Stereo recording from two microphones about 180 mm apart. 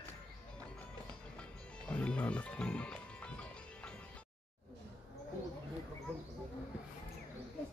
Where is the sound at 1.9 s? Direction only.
5° left (ahead or behind).